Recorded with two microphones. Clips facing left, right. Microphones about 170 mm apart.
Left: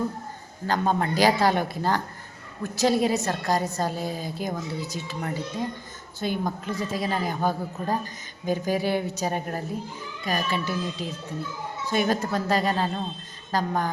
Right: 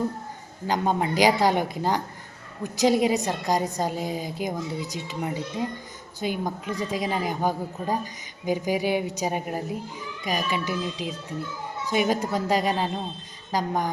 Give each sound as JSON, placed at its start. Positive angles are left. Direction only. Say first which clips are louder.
{"t": 0.7, "sound": "a woman's voice", "louder": "even", "side_deg": -15}